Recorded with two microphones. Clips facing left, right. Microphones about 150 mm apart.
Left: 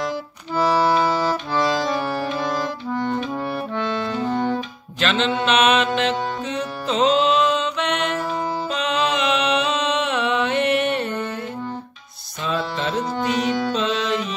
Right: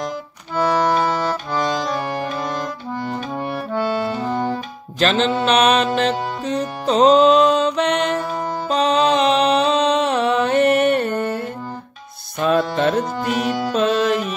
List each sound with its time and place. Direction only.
1.5 s accordion: centre (ahead or behind)
5.0 s mantra: 40° right (ahead or behind)
5.9 s music: 40° right (ahead or behind)
12.4 s music: 55° right (ahead or behind)